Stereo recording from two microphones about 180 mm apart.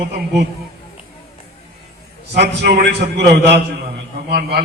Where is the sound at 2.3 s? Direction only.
65° right (ahead or behind).